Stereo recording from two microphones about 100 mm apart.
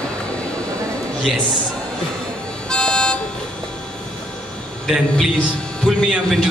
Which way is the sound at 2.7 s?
10° left (ahead or behind).